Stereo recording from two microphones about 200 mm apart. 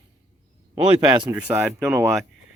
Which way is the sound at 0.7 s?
20° right (ahead or behind).